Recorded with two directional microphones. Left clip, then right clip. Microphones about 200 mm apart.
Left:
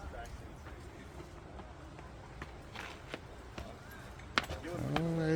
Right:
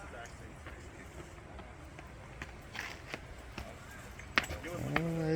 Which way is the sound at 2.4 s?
45° right (ahead or behind).